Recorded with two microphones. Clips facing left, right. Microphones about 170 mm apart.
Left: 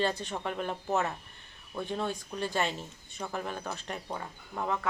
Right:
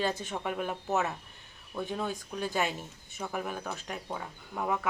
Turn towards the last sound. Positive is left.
turn(degrees=-5)  # may be behind; listen again after turning